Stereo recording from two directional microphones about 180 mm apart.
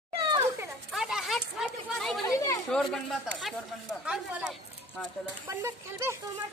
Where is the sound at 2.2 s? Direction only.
15° left (ahead or behind).